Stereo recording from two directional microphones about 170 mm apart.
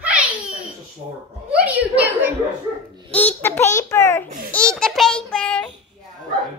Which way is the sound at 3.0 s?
10° left (ahead or behind).